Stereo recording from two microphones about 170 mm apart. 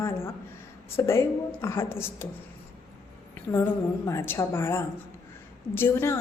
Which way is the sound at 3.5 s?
15° left (ahead or behind).